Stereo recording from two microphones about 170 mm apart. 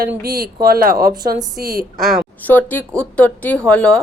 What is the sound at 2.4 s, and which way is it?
Speech, 10° left (ahead or behind).